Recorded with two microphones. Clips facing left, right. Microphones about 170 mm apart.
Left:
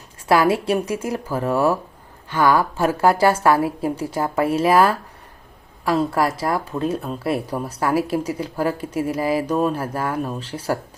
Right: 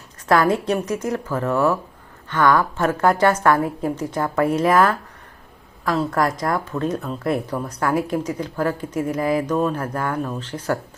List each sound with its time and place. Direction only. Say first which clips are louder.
0.3 s a woman's voice: left 1 dB; 10° left (ahead or behind)